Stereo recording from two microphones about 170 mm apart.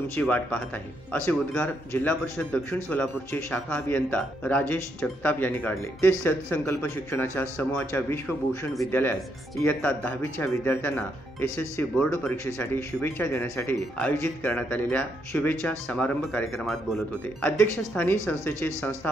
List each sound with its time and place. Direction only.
0.1 s speech: 10° left (ahead or behind)
9.6 s speech: 10° left (ahead or behind)